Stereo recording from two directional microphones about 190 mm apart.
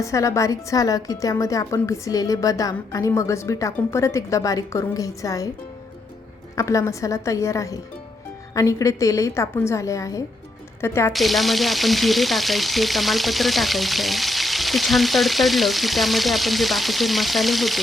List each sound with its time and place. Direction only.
0.0 s a woman's voice: 15° left (ahead or behind)
6.6 s a woman's voice: 15° left (ahead or behind)
11.1 s frying: centre (ahead or behind)